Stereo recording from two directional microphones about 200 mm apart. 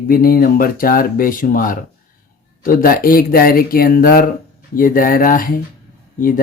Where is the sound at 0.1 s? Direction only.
45° left (ahead or behind).